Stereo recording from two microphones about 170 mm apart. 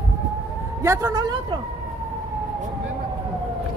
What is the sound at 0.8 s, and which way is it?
Speech, 15° right (ahead or behind).